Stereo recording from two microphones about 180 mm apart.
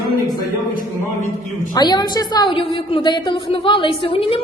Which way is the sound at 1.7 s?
20° left (ahead or behind).